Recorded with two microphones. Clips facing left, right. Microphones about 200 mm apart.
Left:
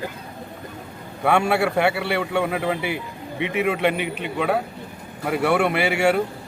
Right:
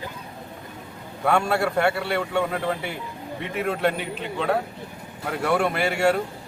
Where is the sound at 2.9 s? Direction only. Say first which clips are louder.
Left 3 dB; 70° left (ahead or behind).